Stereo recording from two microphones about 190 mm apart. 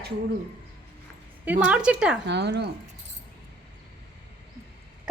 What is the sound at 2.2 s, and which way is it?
Speech, 65° right (ahead or behind).